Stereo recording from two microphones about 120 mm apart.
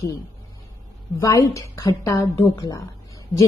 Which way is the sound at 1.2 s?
25° left (ahead or behind).